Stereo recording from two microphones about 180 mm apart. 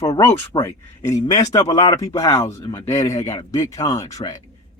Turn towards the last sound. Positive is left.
turn(degrees=20)  # may be behind; listen again after turning